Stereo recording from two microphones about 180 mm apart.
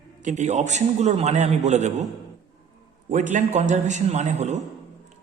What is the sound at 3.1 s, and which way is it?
A man's voice, 40° right (ahead or behind).